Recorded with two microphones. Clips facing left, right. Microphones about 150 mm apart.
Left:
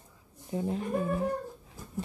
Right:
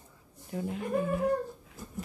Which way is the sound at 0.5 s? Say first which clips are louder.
Left 3 dB; 30° left (ahead or behind).